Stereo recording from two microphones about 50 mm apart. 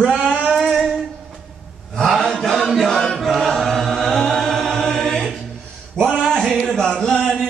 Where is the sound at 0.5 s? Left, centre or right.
Centre.